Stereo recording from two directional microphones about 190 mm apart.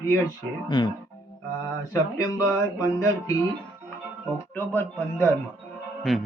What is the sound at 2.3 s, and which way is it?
Speech, 15° left (ahead or behind).